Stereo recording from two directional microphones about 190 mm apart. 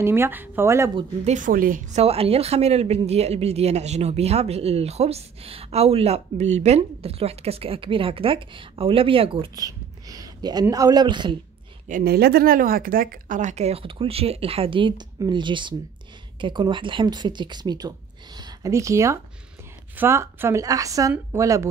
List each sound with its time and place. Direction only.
0.0 s a woman's voice: 10° right (ahead or behind)
0.9 s a woman's voice: 35° right (ahead or behind)
11.9 s a woman's voice: 55° right (ahead or behind); by 21.6 s 15° right (ahead or behind)